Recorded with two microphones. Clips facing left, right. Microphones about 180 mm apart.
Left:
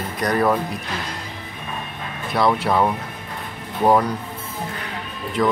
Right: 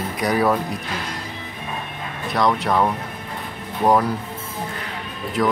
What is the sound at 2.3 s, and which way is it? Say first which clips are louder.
Speech: left 1 dB; 5° left (ahead or behind).